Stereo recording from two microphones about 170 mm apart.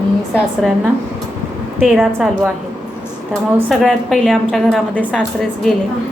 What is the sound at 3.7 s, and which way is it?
A woman's voice, centre (ahead or behind).